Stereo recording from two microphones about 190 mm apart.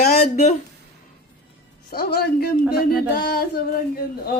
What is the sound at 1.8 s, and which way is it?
Speech, 55° left (ahead or behind).